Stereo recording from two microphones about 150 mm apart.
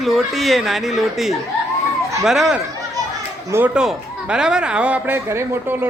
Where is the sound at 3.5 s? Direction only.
15° right (ahead or behind).